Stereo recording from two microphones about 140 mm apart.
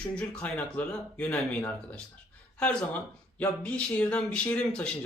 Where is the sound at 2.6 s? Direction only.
10° left (ahead or behind).